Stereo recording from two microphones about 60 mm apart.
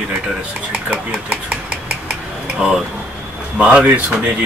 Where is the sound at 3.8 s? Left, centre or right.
Right.